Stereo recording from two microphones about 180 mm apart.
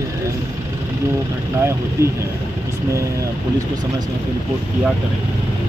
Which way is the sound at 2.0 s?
15° right (ahead or behind).